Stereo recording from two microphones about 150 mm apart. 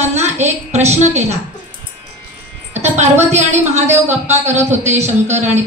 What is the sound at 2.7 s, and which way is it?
A woman's voice, 50° right (ahead or behind).